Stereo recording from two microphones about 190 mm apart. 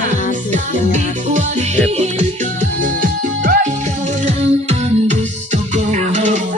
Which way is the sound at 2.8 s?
45° right (ahead or behind).